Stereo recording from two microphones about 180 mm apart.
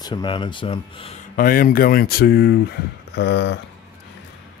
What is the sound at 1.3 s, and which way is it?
Speech, 50° left (ahead or behind).